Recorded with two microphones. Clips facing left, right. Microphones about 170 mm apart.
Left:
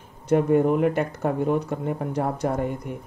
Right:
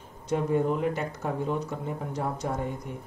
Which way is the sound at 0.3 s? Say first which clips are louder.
Left 7 dB; 60° left (ahead or behind).